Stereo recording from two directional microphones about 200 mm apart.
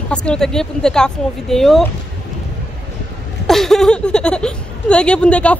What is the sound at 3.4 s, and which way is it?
Speech, centre (ahead or behind).